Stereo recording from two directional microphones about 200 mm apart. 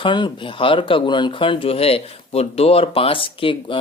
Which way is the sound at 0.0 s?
25° left (ahead or behind).